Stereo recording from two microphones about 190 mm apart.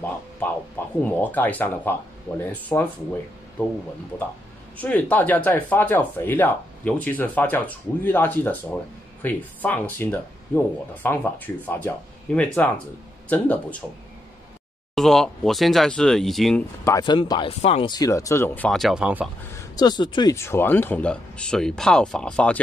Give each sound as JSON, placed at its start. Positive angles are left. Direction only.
{"t": 0.4, "sound": "speech", "side_deg": 10}
{"t": 15.0, "sound": "speech", "side_deg": 0}
{"t": 16.8, "sound": "speech", "side_deg": 20}
{"t": 19.5, "sound": "speech", "side_deg": 20}